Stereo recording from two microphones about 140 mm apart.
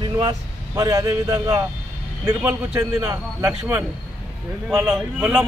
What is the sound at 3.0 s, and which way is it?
Speech, 20° right (ahead or behind).